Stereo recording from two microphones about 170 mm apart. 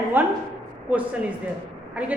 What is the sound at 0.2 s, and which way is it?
A man's voice, 10° right (ahead or behind).